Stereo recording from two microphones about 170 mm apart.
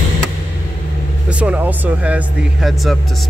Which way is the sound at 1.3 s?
10° right (ahead or behind).